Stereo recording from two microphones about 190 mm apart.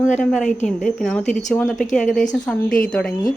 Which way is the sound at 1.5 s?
5° left (ahead or behind).